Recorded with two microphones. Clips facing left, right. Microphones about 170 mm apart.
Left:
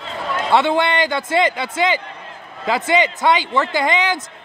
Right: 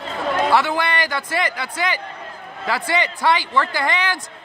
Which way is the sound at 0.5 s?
25° left (ahead or behind).